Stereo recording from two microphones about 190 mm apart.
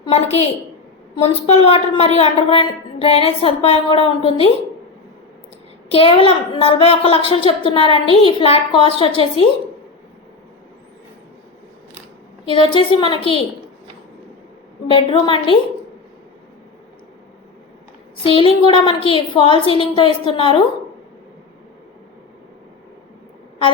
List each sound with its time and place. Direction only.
0.0 s a woman's voice: 30° left (ahead or behind)
5.9 s a woman's voice: 30° left (ahead or behind)
12.5 s a woman's voice: 25° left (ahead or behind)
14.8 s a woman's voice: 30° left (ahead or behind)
18.2 s a woman's voice: 30° left (ahead or behind)